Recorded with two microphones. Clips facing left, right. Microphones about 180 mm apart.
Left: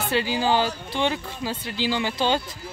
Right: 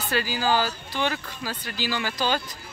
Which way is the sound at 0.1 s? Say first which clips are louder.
Left 1 dB; 25° left (ahead or behind).